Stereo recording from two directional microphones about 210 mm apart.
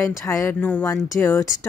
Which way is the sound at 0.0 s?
15° left (ahead or behind).